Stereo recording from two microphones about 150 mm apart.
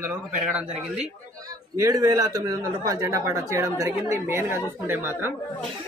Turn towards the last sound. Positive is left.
turn(degrees=-15)  # may be behind; listen again after turning